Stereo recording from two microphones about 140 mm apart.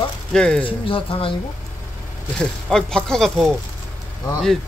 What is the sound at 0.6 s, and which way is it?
Speech, 40° left (ahead or behind).